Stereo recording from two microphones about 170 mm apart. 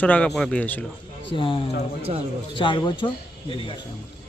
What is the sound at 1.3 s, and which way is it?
Speech, 30° left (ahead or behind).